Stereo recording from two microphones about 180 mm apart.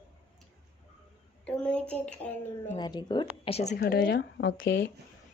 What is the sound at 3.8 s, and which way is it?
Speech, 75° left (ahead or behind).